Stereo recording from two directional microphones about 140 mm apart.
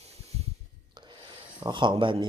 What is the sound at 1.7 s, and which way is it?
Speech, 35° right (ahead or behind).